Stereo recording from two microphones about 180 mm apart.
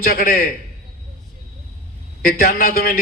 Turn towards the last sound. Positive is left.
turn(degrees=55)  # may be behind; listen again after turning